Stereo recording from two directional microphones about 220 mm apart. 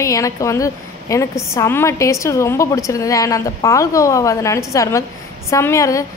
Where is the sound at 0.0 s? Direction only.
15° left (ahead or behind).